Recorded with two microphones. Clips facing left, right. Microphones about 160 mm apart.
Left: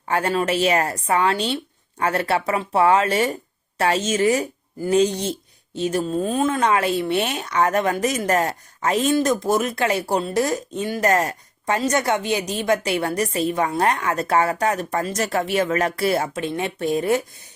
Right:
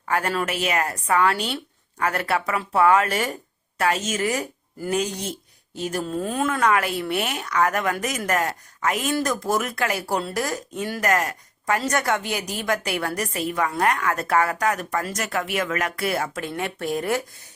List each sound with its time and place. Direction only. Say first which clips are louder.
0.1 s speech: left 3 dB; 25° left (ahead or behind)